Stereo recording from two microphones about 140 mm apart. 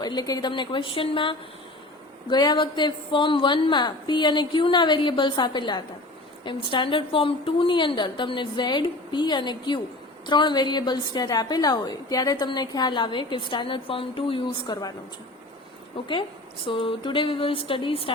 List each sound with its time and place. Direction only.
0.0 s a woman's voice: 30° left (ahead or behind)
16.0 s a woman's voice: 35° left (ahead or behind)